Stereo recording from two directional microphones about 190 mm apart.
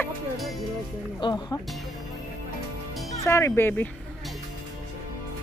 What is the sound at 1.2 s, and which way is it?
Speech, 20° left (ahead or behind).